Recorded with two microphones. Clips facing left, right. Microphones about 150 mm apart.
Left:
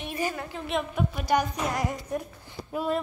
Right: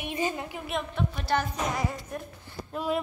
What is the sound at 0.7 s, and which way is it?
A woman's voice, 5° left (ahead or behind).